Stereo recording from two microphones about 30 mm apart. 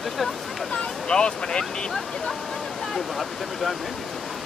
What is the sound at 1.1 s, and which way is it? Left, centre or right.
Speech, left.